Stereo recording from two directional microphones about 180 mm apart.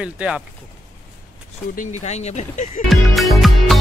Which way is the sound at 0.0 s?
5° right (ahead or behind).